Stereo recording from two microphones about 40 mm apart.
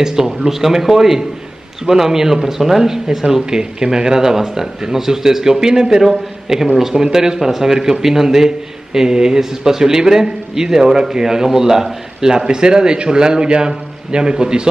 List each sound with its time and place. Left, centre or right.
0.0 s a man's voice: centre